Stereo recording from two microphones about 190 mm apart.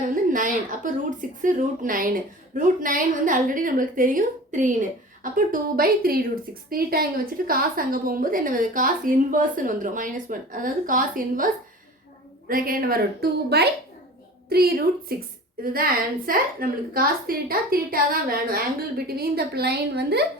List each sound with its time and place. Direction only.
0.0 s a sound: 45° right (ahead or behind)
1.4 s a woman's voice: 45° right (ahead or behind)
15.1 s a woman's voice: 50° right (ahead or behind)